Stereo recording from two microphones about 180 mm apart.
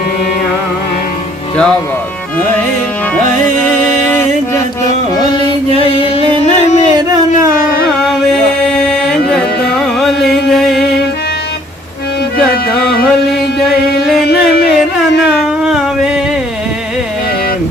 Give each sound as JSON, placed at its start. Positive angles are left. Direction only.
{"t": 1.5, "sound": "speech", "side_deg": 5}
{"t": 3.7, "sound": "mantra", "side_deg": 15}
{"t": 5.5, "sound": "music", "side_deg": 30}
{"t": 8.6, "sound": "music", "side_deg": 5}
{"t": 12.5, "sound": "music", "side_deg": 60}
{"t": 15.3, "sound": "a sound", "side_deg": -5}